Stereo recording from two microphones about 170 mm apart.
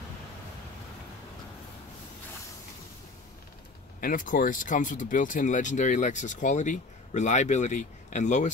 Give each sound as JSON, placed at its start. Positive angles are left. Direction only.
{"t": 4.0, "sound": "speech", "side_deg": 55}